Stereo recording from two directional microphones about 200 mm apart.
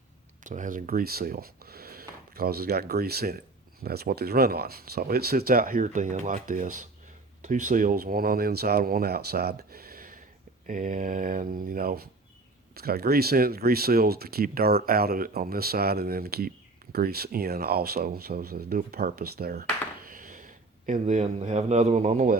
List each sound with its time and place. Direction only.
0.4 s speech: 40° right (ahead or behind)